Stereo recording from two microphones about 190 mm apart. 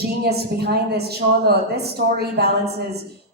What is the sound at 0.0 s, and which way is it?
A woman's voice, 55° right (ahead or behind).